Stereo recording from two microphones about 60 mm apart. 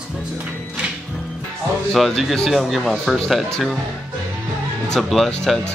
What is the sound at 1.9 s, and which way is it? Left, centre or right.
Speech, centre.